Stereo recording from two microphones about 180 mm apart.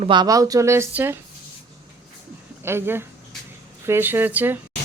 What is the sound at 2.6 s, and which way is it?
Speech, 15° right (ahead or behind).